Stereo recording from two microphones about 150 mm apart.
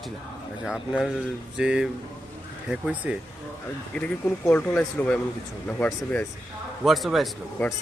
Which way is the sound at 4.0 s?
10° left (ahead or behind).